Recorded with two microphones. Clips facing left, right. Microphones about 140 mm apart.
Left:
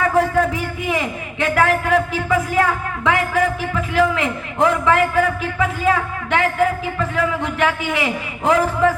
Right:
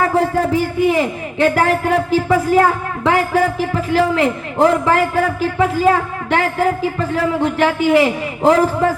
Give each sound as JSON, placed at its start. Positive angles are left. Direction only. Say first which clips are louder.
{"t": 0.0, "sound": "a man's voice", "louder": "right 1 dB", "side_deg": -30}